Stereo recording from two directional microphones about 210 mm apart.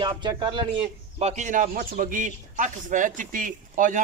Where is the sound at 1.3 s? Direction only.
40° right (ahead or behind).